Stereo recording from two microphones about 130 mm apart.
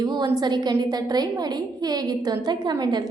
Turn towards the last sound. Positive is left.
turn(degrees=-30)  # may be behind; listen again after turning